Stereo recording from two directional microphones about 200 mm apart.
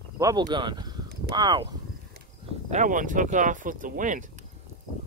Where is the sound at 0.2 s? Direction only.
20° right (ahead or behind).